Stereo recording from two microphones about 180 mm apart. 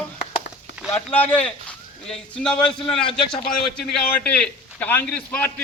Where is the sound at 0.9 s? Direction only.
10° left (ahead or behind).